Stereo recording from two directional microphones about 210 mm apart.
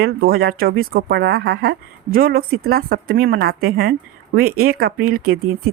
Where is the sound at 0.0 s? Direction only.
45° right (ahead or behind).